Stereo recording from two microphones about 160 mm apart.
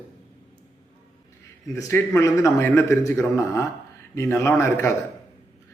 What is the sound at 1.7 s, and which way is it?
A man's voice, 20° left (ahead or behind).